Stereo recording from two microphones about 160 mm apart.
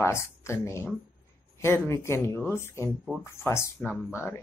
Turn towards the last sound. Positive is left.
turn(degrees=-5)  # may be behind; listen again after turning